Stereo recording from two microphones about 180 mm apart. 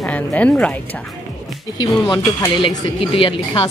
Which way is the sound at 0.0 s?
10° left (ahead or behind).